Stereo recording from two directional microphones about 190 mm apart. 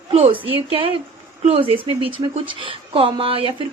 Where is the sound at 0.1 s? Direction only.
30° right (ahead or behind).